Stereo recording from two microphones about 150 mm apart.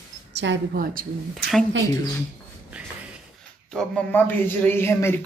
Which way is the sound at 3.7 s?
10° left (ahead or behind).